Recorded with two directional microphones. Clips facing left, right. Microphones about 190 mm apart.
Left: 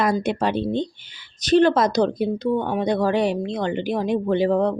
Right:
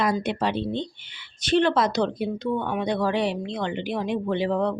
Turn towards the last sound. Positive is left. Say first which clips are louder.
# left 5 dB
turn(degrees=40)  # may be behind; listen again after turning